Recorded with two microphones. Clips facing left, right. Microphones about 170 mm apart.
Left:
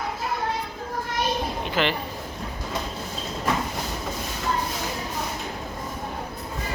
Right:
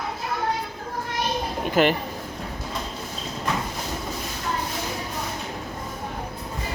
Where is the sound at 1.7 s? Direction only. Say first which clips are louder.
Right 6 dB; 45° right (ahead or behind).